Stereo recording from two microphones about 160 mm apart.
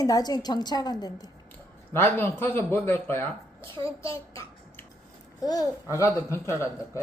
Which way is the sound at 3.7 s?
35° right (ahead or behind).